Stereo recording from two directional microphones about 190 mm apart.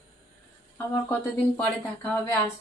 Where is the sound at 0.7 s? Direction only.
10° left (ahead or behind).